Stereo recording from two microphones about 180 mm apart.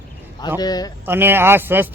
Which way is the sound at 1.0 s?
10° right (ahead or behind).